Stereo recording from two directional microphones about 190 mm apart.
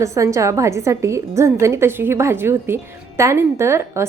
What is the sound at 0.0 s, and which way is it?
A woman's voice, 15° right (ahead or behind).